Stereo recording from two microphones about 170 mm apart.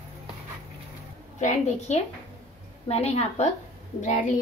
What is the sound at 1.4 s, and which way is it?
A woman's voice, 45° left (ahead or behind).